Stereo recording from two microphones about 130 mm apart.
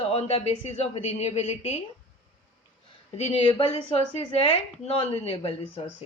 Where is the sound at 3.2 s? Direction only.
55° left (ahead or behind).